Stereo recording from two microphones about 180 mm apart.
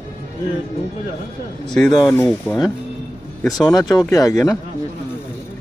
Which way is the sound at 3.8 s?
20° left (ahead or behind).